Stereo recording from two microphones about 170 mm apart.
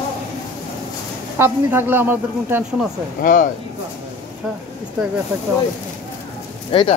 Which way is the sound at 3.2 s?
55° left (ahead or behind).